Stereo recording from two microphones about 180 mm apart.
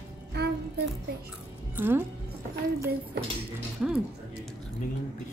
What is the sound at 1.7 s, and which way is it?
Speech, 10° right (ahead or behind).